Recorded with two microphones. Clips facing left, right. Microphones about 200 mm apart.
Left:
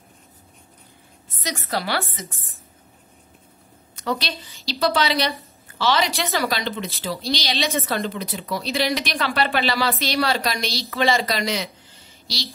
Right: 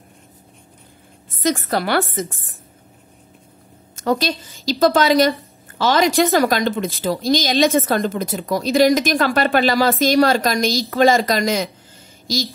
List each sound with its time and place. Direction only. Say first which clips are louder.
1.3 s speech: right 8 dB; 50° right (ahead or behind)
3.9 s a woman's voice: right 7 dB; 45° right (ahead or behind)